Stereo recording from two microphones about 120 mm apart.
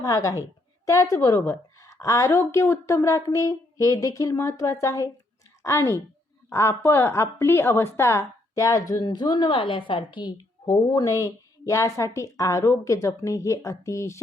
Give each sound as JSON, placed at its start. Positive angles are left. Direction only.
{"t": 0.0, "sound": "a woman's voice", "side_deg": 30}
{"t": 10.9, "sound": "a woman's voice", "side_deg": 30}